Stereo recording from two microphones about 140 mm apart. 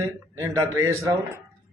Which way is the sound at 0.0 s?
20° right (ahead or behind).